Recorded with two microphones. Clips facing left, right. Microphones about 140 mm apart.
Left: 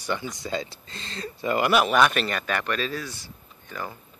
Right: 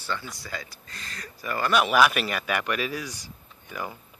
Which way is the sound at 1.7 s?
Centre (ahead or behind).